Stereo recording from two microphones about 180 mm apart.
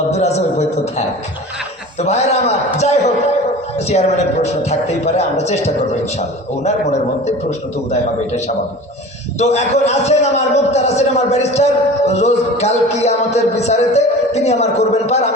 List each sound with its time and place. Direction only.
0.1 s a man's voice: 35° left (ahead or behind)
4.6 s a man's voice: 35° left (ahead or behind)
9.4 s a man's voice: 35° left (ahead or behind)